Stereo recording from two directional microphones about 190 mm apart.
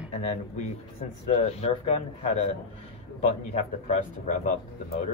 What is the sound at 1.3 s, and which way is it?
Speech, 35° left (ahead or behind).